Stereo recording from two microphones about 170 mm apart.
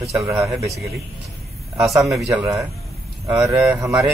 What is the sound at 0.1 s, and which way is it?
Speech, 20° right (ahead or behind).